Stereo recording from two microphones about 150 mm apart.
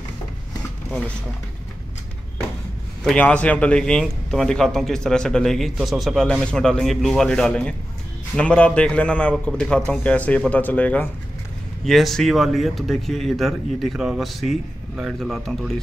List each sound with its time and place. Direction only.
3.0 s a man's voice: 5° left (ahead or behind)